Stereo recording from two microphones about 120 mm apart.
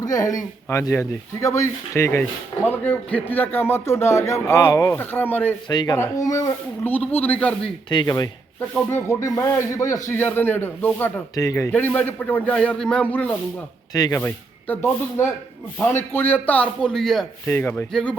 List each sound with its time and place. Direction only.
0.0 s a man's voice: 30° left (ahead or behind)
5.6 s speech: 35° left (ahead or behind)
6.8 s a man's voice: 15° left (ahead or behind)
7.9 s speech: 35° left (ahead or behind)
8.9 s speech: 20° left (ahead or behind)
11.3 s speech: 25° left (ahead or behind)
11.7 s a man's voice: 15° left (ahead or behind)
13.9 s speech: 30° left (ahead or behind)
14.2 s a man's voice: 15° left (ahead or behind)
17.4 s a man's voice: 15° left (ahead or behind)
17.9 s a man's voice: 5° left (ahead or behind)